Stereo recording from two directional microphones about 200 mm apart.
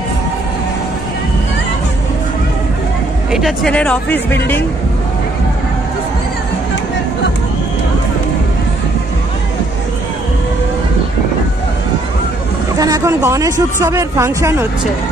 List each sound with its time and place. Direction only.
3.3 s speech: centre (ahead or behind)
12.7 s speech: 20° right (ahead or behind)